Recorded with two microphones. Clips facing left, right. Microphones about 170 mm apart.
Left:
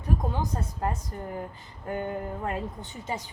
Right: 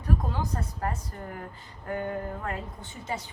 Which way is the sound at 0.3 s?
20° left (ahead or behind).